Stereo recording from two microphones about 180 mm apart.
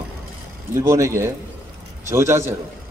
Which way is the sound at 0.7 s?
15° right (ahead or behind).